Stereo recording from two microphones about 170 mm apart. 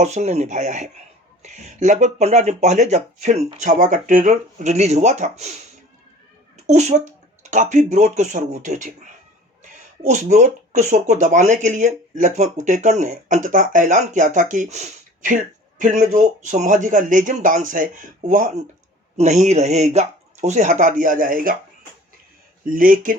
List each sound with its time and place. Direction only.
0.0 s speech: 40° right (ahead or behind)
6.7 s speech: 45° right (ahead or behind)
22.7 s speech: 55° right (ahead or behind)